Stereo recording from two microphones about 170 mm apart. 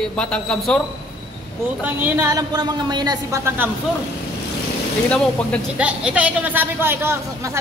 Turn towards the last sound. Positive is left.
turn(degrees=-15)  # may be behind; listen again after turning